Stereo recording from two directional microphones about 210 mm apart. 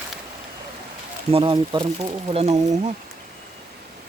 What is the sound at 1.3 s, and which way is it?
Speech, 25° right (ahead or behind).